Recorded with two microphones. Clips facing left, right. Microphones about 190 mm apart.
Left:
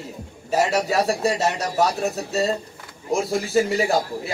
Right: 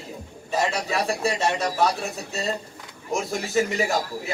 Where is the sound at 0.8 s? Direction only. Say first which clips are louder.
Left 4 dB; 40° left (ahead or behind).